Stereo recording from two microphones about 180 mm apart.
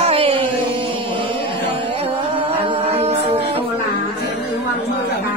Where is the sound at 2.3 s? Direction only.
30° right (ahead or behind).